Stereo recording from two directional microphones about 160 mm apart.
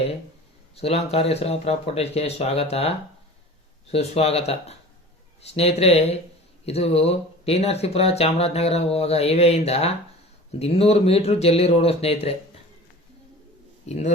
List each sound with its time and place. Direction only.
0.8 s speech: 40° left (ahead or behind)
3.9 s speech: 40° left (ahead or behind)
13.8 s speech: 45° left (ahead or behind)